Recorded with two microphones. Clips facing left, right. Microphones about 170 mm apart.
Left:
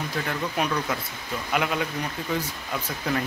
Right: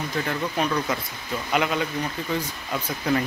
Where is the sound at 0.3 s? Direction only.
Centre (ahead or behind).